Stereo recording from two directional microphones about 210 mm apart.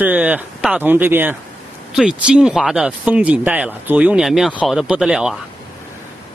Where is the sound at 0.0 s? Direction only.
10° right (ahead or behind).